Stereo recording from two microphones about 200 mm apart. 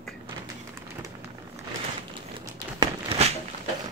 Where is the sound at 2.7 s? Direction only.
30° right (ahead or behind).